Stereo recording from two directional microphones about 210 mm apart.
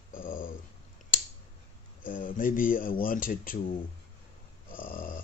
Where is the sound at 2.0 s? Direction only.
40° left (ahead or behind).